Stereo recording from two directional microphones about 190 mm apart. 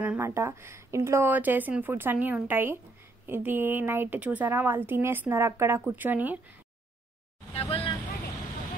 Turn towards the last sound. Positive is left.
turn(degrees=30)  # may be behind; listen again after turning